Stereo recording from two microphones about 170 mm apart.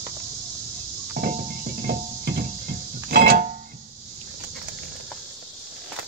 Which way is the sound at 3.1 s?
65° right (ahead or behind).